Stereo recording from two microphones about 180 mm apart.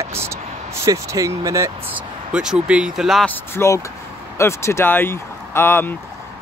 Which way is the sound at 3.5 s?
15° left (ahead or behind).